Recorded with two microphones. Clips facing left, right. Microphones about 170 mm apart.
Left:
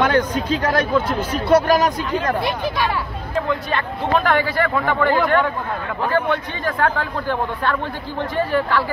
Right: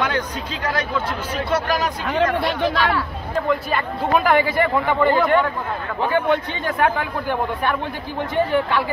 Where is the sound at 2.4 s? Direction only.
15° left (ahead or behind).